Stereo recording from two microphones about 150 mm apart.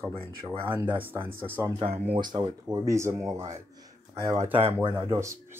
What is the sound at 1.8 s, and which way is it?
Speech, 40° right (ahead or behind).